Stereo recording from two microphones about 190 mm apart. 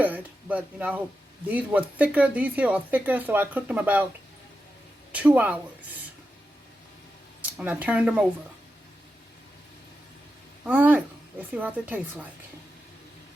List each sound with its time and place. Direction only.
0.0 s speech: 10° right (ahead or behind)
5.1 s speech: 5° right (ahead or behind)
7.6 s speech: 10° right (ahead or behind)
10.7 s speech: 10° right (ahead or behind)